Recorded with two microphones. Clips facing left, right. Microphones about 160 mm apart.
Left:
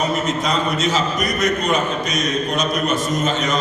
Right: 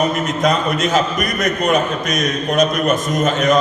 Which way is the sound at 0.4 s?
55° right (ahead or behind).